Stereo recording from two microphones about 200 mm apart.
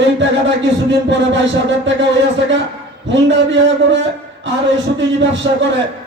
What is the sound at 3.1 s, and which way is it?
Speech, 65° right (ahead or behind).